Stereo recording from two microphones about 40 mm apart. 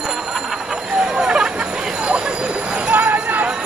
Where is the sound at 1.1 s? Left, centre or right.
Centre.